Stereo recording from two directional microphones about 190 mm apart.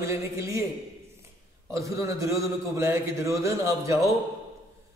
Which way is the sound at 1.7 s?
15° right (ahead or behind).